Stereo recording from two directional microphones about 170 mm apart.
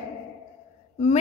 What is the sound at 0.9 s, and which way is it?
Speech, 40° left (ahead or behind).